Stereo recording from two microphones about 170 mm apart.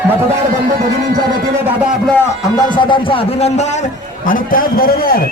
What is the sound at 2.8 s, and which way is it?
Speech, 30° left (ahead or behind).